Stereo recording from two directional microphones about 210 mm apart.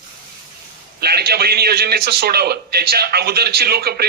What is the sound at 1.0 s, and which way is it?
A man's voice, 50° right (ahead or behind).